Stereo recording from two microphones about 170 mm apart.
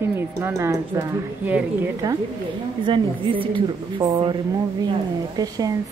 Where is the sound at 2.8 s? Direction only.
30° right (ahead or behind).